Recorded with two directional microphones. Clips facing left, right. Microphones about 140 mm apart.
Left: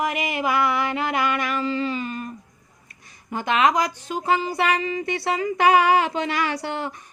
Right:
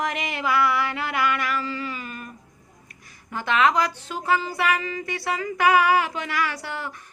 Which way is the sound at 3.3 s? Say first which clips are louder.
Left 1 dB; 20° left (ahead or behind).